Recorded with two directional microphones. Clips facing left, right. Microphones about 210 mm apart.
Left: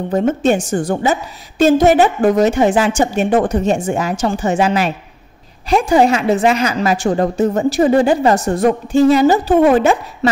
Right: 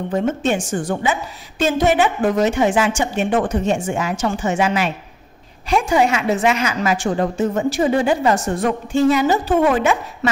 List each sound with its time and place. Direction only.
0.1 s a woman's voice: 40° left (ahead or behind)